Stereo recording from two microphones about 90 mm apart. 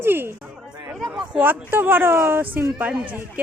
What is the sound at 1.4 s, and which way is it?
Speech, 20° right (ahead or behind).